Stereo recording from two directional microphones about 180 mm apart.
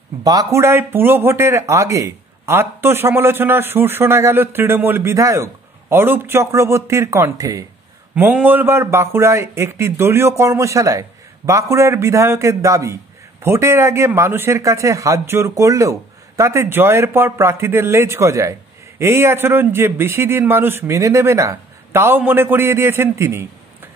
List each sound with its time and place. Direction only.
0.2 s a man's voice: 20° right (ahead or behind)